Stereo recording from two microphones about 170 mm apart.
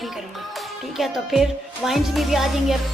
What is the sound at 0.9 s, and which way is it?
Music, centre (ahead or behind).